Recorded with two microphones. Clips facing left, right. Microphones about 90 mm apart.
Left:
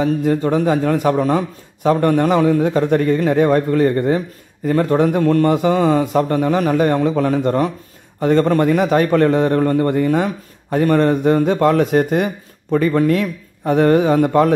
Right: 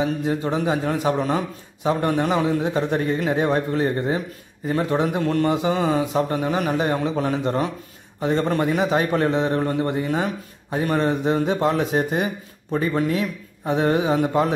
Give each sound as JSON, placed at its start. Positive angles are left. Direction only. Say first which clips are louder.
{"t": 0.0, "sound": "a man's voice", "louder": "left 6 dB", "side_deg": 50}